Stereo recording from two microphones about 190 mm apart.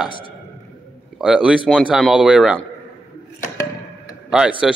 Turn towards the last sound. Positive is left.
turn(degrees=-5)  # may be behind; listen again after turning